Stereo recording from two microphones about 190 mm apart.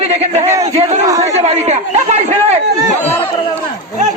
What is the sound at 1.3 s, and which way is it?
A man's voice, 35° right (ahead or behind).